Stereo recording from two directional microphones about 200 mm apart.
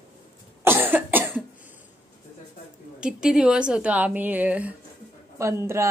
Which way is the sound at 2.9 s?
5° right (ahead or behind).